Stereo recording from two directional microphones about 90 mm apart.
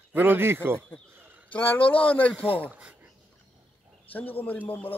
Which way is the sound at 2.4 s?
20° right (ahead or behind).